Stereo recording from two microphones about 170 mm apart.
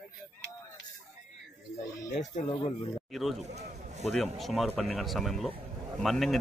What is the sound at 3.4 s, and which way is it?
Speech, 40° right (ahead or behind).